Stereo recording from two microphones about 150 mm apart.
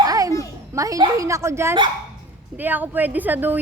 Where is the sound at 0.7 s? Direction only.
20° right (ahead or behind).